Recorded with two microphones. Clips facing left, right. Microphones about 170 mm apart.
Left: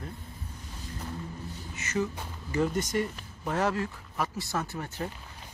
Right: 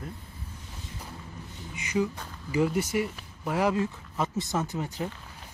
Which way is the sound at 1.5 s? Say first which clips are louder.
Right 3 dB; 15° right (ahead or behind).